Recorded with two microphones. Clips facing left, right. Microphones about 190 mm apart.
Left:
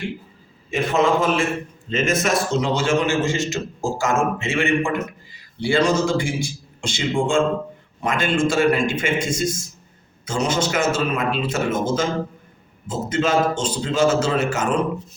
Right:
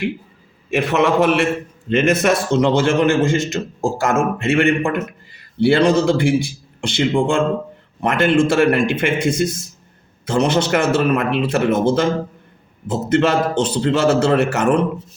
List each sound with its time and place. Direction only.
0.7 s a man's voice: 70° right (ahead or behind)